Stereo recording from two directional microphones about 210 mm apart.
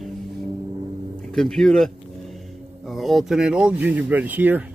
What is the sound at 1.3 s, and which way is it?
Speech, centre (ahead or behind).